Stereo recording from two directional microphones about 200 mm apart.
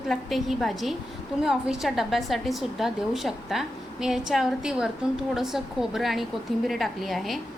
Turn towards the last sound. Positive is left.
turn(degrees=0)  # may be behind; listen again after turning